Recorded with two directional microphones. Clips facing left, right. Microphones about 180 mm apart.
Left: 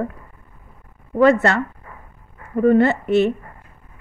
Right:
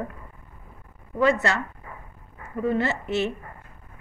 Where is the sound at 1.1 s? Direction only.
55° left (ahead or behind).